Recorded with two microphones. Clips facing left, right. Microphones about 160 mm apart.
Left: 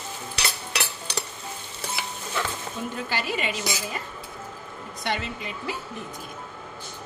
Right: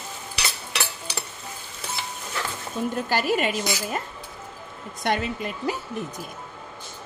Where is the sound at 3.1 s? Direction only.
45° right (ahead or behind).